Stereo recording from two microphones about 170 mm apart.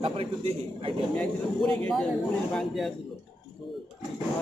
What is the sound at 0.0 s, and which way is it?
Speech, 30° right (ahead or behind).